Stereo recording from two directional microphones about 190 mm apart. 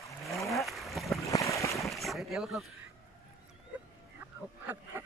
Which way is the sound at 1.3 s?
15° left (ahead or behind).